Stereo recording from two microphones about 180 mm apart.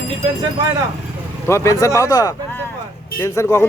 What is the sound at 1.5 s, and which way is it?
Speech, 15° left (ahead or behind).